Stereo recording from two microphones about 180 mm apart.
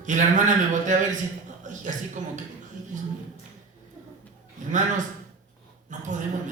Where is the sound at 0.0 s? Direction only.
45° right (ahead or behind).